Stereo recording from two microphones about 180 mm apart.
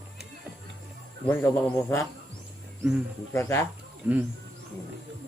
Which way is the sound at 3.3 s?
15° left (ahead or behind).